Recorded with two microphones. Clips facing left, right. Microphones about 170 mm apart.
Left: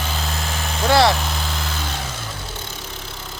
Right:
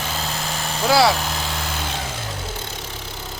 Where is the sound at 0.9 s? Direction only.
5° right (ahead or behind).